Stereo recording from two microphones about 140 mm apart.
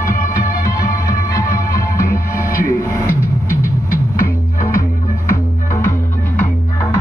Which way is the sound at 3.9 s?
90° left.